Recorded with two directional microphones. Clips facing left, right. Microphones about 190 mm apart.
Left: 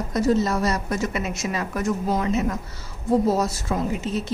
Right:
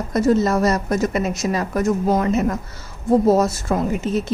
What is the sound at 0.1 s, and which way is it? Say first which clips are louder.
A woman's voice: right 4 dB; 50° right (ahead or behind).